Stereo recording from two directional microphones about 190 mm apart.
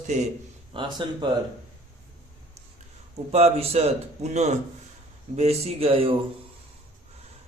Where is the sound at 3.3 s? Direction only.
35° right (ahead or behind).